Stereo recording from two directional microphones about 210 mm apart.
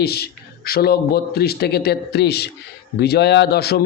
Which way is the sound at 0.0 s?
50° left (ahead or behind).